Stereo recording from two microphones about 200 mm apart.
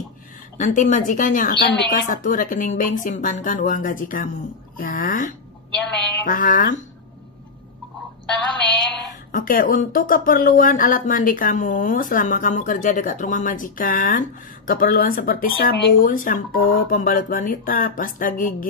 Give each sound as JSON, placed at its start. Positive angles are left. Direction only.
{"t": 0.6, "sound": "a woman's voice", "side_deg": 40}
{"t": 1.5, "sound": "a woman's voice", "side_deg": 60}
{"t": 2.0, "sound": "a woman's voice", "side_deg": 40}
{"t": 9.3, "sound": "speech", "side_deg": 45}